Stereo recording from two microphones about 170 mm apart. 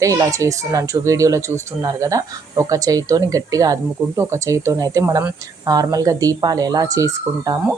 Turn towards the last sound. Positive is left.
turn(degrees=-20)  # may be behind; listen again after turning